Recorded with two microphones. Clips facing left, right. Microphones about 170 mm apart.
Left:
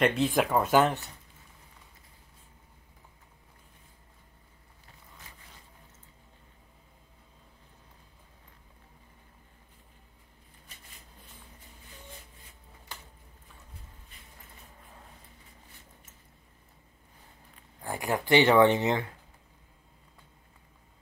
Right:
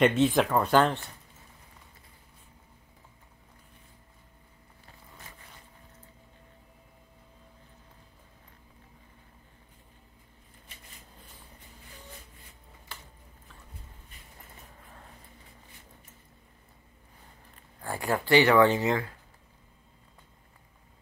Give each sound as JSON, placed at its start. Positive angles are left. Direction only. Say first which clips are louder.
{"t": 0.0, "sound": "speech", "louder": "right 3 dB", "side_deg": 0}
{"t": 17.8, "sound": "speech", "louder": "right 1 dB", "side_deg": 15}